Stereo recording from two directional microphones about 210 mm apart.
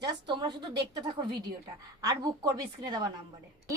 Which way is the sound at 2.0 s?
20° right (ahead or behind).